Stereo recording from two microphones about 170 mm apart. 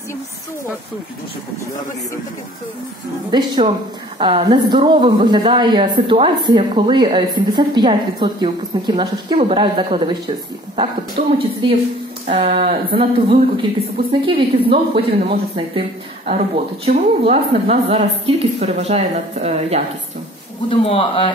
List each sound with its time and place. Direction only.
3.3 s a woman's voice: 25° right (ahead or behind)
16.3 s speech: 45° right (ahead or behind)
17.2 s a woman's voice: 35° right (ahead or behind)
20.7 s speech: 35° left (ahead or behind)